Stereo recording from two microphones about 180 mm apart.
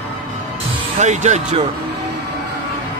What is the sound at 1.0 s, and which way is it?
Speech, 40° right (ahead or behind).